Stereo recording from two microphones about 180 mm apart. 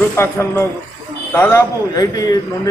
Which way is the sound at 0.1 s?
15° left (ahead or behind).